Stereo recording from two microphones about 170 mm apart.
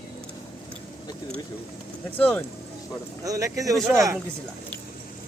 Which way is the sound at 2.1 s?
10° left (ahead or behind).